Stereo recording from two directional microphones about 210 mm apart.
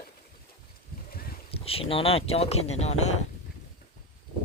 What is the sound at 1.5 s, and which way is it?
Speech, 30° left (ahead or behind).